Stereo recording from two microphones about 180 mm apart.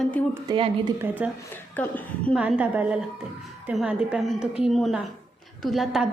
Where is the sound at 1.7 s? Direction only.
10° left (ahead or behind).